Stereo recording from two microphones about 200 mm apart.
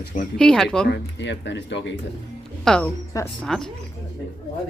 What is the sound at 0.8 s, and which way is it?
Speech, 60° left (ahead or behind).